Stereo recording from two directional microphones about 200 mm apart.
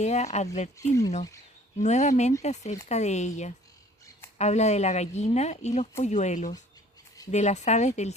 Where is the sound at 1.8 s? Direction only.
35° left (ahead or behind).